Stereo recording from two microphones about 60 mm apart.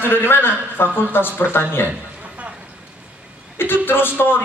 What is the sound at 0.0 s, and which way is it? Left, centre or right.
A man's voice, left.